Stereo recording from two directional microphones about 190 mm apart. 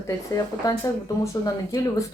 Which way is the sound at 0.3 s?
20° left (ahead or behind).